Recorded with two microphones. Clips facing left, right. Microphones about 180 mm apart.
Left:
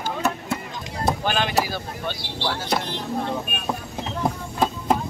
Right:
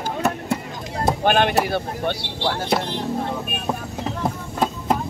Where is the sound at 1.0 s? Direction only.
60° right (ahead or behind).